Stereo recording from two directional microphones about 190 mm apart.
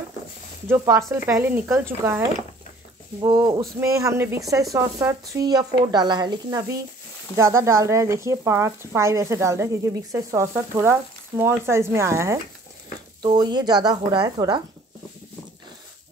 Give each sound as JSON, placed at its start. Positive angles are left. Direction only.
{"t": 0.7, "sound": "speech", "side_deg": -15}